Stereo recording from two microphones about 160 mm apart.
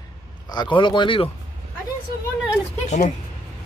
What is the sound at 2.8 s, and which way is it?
Speech, 45° left (ahead or behind).